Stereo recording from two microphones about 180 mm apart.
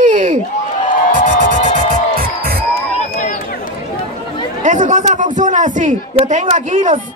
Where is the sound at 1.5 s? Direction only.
50° right (ahead or behind).